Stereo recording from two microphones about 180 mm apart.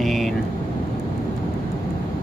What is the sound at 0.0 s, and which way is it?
Vehicle, centre (ahead or behind).